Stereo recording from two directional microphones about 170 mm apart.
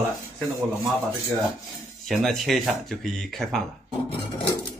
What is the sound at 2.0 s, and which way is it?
Speech, centre (ahead or behind).